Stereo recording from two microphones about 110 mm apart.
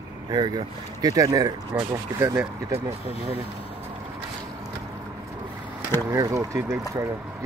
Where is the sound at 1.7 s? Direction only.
20° right (ahead or behind).